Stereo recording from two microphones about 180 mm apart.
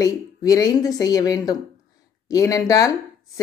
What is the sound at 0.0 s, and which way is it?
Speech, 20° left (ahead or behind).